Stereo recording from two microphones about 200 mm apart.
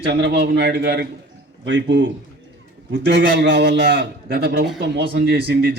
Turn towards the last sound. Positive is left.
turn(degrees=-55)  # may be behind; listen again after turning